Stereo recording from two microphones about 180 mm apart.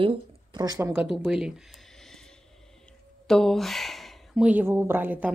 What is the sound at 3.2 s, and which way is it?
Speech, centre (ahead or behind).